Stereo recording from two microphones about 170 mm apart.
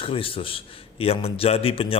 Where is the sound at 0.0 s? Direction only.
30° left (ahead or behind).